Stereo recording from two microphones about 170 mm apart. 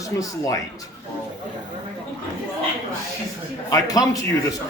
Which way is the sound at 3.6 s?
20° left (ahead or behind).